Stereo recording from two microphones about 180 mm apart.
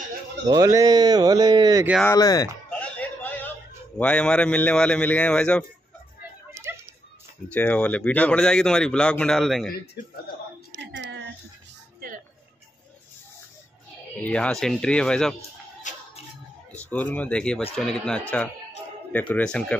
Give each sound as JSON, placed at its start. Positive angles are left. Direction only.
{"t": 0.5, "sound": "speech", "side_deg": -20}
{"t": 2.0, "sound": "speech", "side_deg": 20}
{"t": 2.7, "sound": "chatter", "side_deg": 10}
{"t": 4.0, "sound": "speech", "side_deg": 5}
{"t": 6.5, "sound": "a sound", "side_deg": -15}
{"t": 7.5, "sound": "speech", "side_deg": 5}
{"t": 10.8, "sound": "a sound", "side_deg": -80}
{"t": 14.1, "sound": "speech", "side_deg": 10}
{"t": 15.9, "sound": "music", "side_deg": 45}
{"t": 16.7, "sound": "speech", "side_deg": 10}